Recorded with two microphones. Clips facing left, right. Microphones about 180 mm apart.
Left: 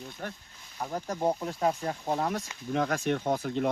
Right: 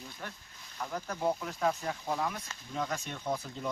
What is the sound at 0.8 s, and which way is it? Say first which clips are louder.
Speech: left 4 dB; 35° left (ahead or behind).